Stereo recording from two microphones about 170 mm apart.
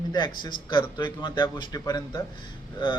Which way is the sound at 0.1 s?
25° left (ahead or behind).